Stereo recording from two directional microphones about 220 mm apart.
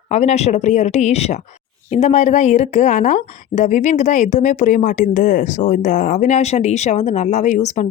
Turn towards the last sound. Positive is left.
turn(degrees=30)  # may be behind; listen again after turning